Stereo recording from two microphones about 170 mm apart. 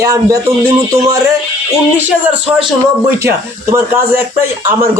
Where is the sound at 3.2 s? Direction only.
15° right (ahead or behind).